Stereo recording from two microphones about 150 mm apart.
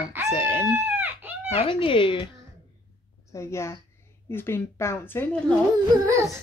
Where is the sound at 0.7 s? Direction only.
10° right (ahead or behind).